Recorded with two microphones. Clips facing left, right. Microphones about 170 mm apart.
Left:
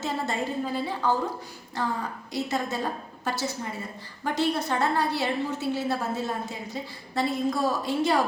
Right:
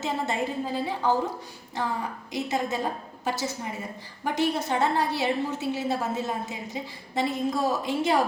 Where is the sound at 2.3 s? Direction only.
20° right (ahead or behind).